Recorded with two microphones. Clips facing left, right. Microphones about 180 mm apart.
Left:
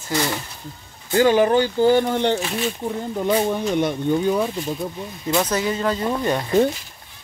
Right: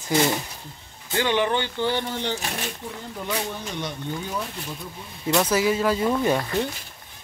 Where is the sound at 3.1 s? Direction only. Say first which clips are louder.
Left 9 dB; 45° left (ahead or behind).